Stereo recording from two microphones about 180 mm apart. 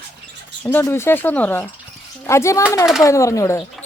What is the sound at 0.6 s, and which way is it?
A woman's voice, 10° left (ahead or behind).